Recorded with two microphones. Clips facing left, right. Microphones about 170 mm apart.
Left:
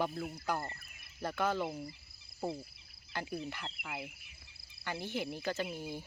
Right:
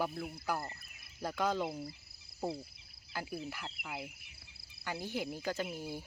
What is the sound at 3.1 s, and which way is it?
Speech, 5° right (ahead or behind).